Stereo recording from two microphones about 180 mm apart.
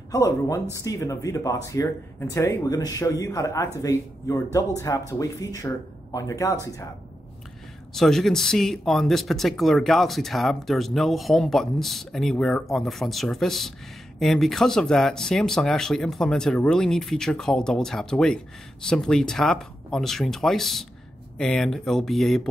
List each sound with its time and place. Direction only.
0.1 s speech: 20° left (ahead or behind)
7.9 s speech: centre (ahead or behind)